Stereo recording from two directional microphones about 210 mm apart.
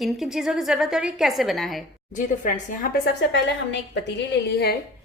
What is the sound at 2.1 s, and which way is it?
A woman's voice, 40° left (ahead or behind).